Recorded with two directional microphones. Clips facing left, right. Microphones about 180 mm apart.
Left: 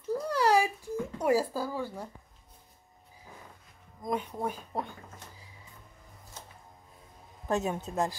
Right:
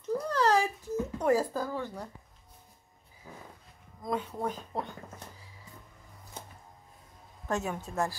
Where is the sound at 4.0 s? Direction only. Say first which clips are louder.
Even; 15° left (ahead or behind).